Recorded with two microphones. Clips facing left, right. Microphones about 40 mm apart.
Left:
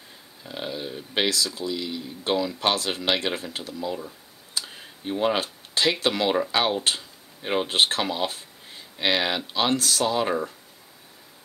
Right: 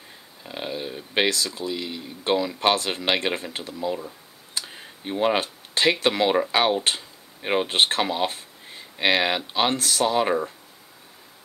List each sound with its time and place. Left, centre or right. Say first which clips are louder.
0.4 s a sound: right 1 dB; centre
1.3 s speech: even; right
2.7 s speech: right 2 dB; right
4.6 s computer keyboard: left 1 dB; centre
5.4 s speech: right 2 dB; right
6.2 s speech: right 3 dB; centre
7.7 s speech: left 1 dB; right
8.0 s speech: right 2 dB; centre